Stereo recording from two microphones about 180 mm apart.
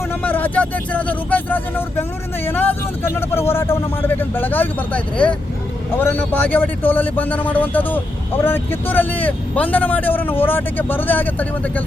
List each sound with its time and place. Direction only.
0.1 s a man's voice: 10° left (ahead or behind)